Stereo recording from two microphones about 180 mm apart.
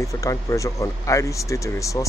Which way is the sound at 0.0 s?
15° left (ahead or behind).